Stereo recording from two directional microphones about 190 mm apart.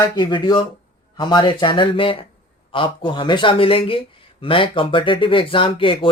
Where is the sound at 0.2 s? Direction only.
25° left (ahead or behind).